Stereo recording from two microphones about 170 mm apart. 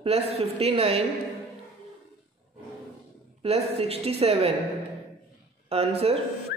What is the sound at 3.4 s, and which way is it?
A man's voice, 35° right (ahead or behind).